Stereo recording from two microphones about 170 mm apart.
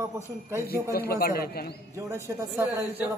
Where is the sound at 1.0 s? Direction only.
65° left (ahead or behind).